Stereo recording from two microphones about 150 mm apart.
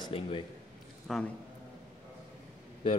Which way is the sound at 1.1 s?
Centre (ahead or behind).